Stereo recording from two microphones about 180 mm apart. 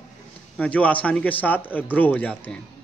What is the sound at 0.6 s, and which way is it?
A man's voice, 10° left (ahead or behind).